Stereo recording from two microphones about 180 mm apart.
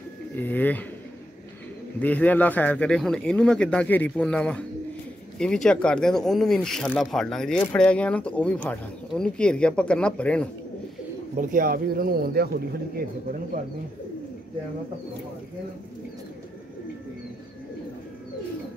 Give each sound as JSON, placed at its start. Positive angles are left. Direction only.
{"t": 0.4, "sound": "a sound", "side_deg": 10}
{"t": 2.0, "sound": "speech", "side_deg": 10}
{"t": 11.3, "sound": "speech", "side_deg": -50}